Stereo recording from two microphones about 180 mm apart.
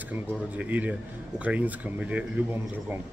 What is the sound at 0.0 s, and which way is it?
Speech, 10° right (ahead or behind).